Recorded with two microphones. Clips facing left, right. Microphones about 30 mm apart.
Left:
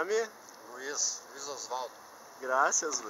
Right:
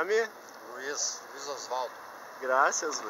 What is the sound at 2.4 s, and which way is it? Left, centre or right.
Speech, right.